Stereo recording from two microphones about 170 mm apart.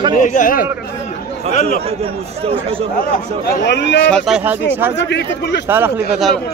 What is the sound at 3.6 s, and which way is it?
Speech, 90° left.